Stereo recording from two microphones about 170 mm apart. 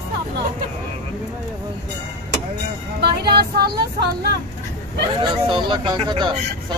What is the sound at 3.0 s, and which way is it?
Speech, 70° right (ahead or behind).